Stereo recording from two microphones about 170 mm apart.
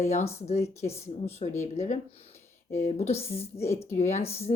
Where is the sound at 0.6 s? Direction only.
15° left (ahead or behind).